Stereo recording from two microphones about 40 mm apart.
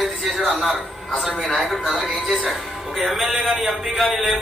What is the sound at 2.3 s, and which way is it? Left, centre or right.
A man's voice, centre.